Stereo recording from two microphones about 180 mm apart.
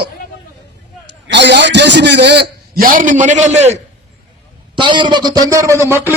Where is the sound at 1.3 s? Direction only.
75° right (ahead or behind); by 3.8 s 40° right (ahead or behind).